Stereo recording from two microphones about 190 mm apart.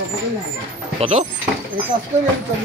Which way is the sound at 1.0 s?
35° right (ahead or behind).